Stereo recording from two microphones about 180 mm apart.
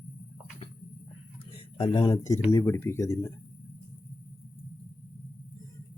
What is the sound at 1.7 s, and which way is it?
Speech, 25° left (ahead or behind).